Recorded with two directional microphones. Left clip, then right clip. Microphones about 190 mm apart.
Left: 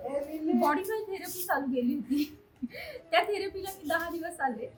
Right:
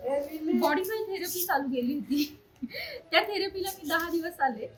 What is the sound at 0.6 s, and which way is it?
A woman's voice, 15° left (ahead or behind).